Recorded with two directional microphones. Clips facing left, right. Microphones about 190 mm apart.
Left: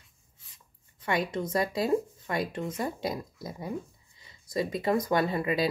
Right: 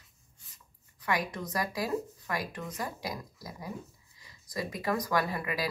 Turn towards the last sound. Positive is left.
turn(degrees=25)  # may be behind; listen again after turning